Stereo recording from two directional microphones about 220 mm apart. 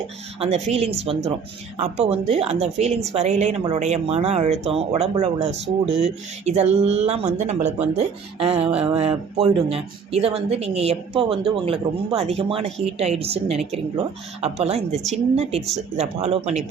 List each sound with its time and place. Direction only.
0.3 s speech: 30° right (ahead or behind)